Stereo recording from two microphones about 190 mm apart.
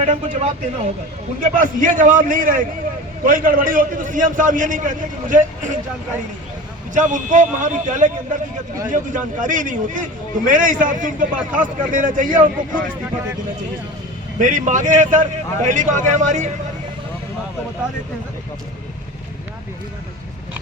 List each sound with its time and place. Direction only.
0.0 s a man's voice: 35° right (ahead or behind)
6.9 s a man's voice: 40° right (ahead or behind)
14.3 s speech: 40° right (ahead or behind)